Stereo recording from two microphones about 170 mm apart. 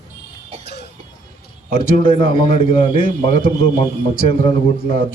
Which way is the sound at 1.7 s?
30° left (ahead or behind).